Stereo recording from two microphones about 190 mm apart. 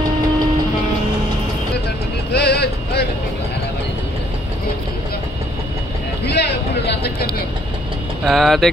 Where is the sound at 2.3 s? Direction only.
60° left (ahead or behind).